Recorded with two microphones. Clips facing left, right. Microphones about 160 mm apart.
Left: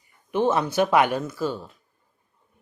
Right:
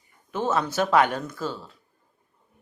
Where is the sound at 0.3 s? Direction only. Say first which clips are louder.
Left 4 dB; 15° left (ahead or behind).